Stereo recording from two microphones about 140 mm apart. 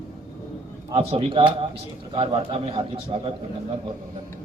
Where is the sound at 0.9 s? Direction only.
40° right (ahead or behind).